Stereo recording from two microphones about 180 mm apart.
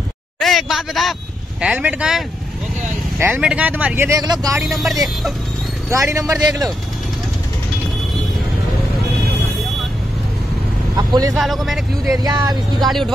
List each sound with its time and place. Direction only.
0.4 s speech: centre (ahead or behind); by 4.6 s 20° right (ahead or behind)
4.6 s speech: centre (ahead or behind)
5.9 s speech: 15° right (ahead or behind)
11.0 s speech: 20° right (ahead or behind)
11.3 s speech: centre (ahead or behind)
12.2 s speech: 20° right (ahead or behind)
12.8 s speech: centre (ahead or behind)